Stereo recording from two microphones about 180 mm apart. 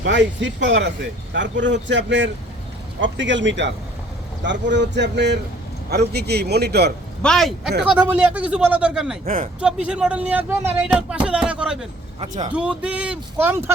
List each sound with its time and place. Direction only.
0.0 s a man's voice: 90° right; by 6.9 s 65° right (ahead or behind)
7.2 s speech: 5° left (ahead or behind)
9.2 s speech: 50° right (ahead or behind)
9.8 s speech: 5° right (ahead or behind)